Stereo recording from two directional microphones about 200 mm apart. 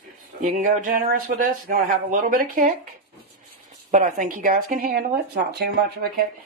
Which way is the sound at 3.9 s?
40° right (ahead or behind).